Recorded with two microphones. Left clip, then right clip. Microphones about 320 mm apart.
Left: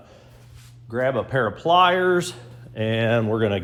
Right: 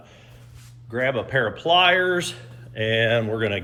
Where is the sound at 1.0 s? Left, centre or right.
Centre.